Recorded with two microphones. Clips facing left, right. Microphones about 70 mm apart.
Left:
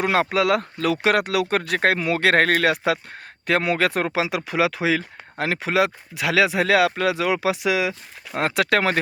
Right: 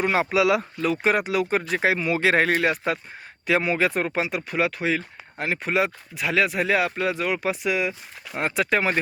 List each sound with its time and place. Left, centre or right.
0.0 s speech: left
0.8 s speech: left
8.4 s speech: left